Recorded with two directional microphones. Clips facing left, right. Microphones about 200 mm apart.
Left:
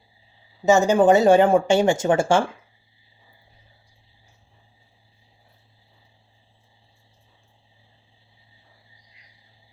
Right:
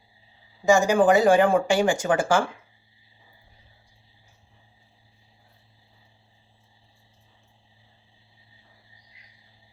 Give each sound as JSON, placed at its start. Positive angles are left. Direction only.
{"t": 0.6, "sound": "speech", "side_deg": 25}